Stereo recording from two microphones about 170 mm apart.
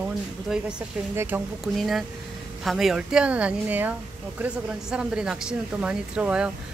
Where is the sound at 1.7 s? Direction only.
Centre (ahead or behind).